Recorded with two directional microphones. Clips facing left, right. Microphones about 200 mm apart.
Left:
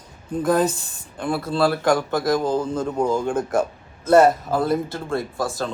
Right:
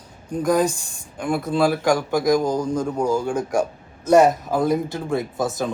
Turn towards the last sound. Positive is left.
turn(degrees=-20)  # may be behind; listen again after turning